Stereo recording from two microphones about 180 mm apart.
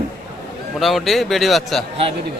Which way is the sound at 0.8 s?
Centre (ahead or behind).